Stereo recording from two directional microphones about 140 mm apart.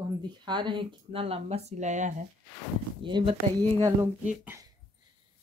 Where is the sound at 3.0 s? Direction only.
35° right (ahead or behind).